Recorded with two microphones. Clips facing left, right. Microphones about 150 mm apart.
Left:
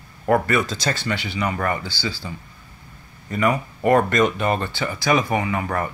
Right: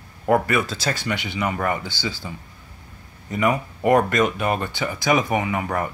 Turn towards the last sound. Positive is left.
turn(degrees=-15)  # may be behind; listen again after turning